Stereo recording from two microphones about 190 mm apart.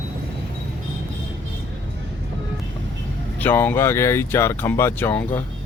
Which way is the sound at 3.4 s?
10° left (ahead or behind).